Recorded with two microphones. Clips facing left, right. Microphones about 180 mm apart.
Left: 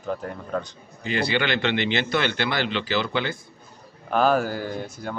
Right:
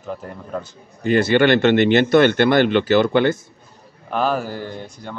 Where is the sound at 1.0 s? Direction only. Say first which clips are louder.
Right 9 dB; 50° right (ahead or behind).